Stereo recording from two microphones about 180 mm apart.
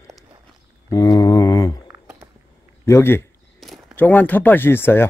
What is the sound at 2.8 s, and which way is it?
A man's voice, 15° left (ahead or behind).